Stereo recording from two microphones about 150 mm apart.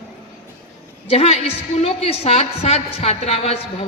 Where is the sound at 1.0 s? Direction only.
40° left (ahead or behind).